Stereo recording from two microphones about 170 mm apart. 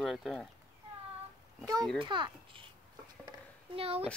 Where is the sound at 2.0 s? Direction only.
30° right (ahead or behind).